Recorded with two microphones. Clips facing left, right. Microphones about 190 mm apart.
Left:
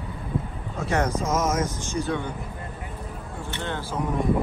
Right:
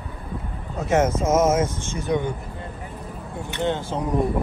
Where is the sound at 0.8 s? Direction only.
20° right (ahead or behind).